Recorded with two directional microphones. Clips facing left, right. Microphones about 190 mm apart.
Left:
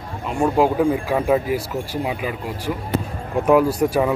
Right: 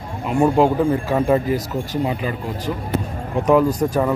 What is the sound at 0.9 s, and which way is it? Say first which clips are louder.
Speech: right 1 dB; 10° left (ahead or behind).